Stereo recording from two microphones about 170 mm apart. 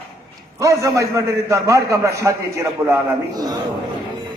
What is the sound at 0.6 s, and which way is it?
A man's voice, 20° right (ahead or behind).